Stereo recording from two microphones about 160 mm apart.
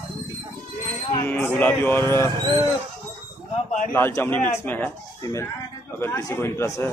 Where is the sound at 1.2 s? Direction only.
10° left (ahead or behind).